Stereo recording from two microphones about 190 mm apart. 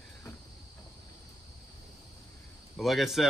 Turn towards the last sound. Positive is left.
turn(degrees=0)  # may be behind; listen again after turning